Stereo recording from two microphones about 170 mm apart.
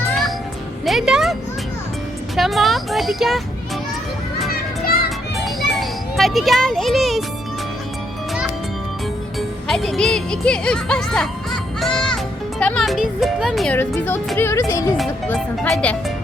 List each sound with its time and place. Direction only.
0.9 s music: 5° right (ahead or behind)
2.3 s speech: centre (ahead or behind)
5.4 s a sound: centre (ahead or behind)
9.6 s speech: centre (ahead or behind)
13.7 s speech: 10° left (ahead or behind)
15.6 s speech: 5° left (ahead or behind)